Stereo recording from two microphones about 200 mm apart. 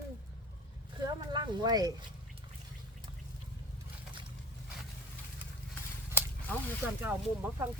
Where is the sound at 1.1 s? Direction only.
20° right (ahead or behind).